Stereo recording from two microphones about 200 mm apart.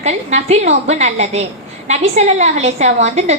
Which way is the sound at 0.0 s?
35° right (ahead or behind).